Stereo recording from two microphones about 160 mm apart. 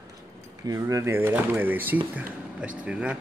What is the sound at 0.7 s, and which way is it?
A man's voice, 20° right (ahead or behind).